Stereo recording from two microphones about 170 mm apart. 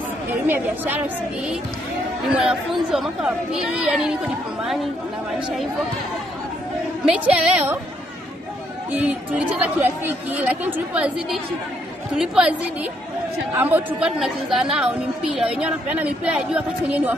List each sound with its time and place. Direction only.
0.3 s a woman's voice: 10° right (ahead or behind)
7.1 s a woman's voice: 10° right (ahead or behind)
9.0 s a woman's voice: 10° right (ahead or behind)
13.6 s a woman's voice: 10° right (ahead or behind)